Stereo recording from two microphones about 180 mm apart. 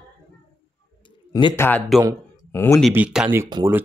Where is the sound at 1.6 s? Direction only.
5° left (ahead or behind).